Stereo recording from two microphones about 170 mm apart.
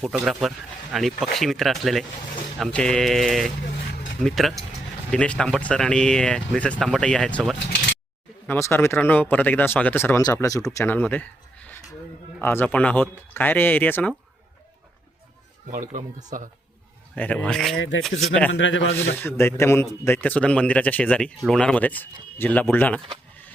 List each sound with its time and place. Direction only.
0.0 s a man's voice: centre (ahead or behind)
15.7 s speech: 50° right (ahead or behind)
17.2 s speech: 5° left (ahead or behind)
17.7 s a man's voice: 90° left
18.9 s a man's voice: 15° left (ahead or behind)